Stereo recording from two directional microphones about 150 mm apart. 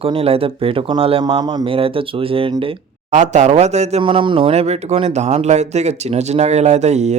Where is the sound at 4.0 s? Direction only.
35° right (ahead or behind).